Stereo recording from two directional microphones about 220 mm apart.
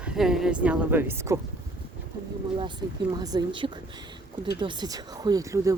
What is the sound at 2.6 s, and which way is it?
Speech, 20° right (ahead or behind).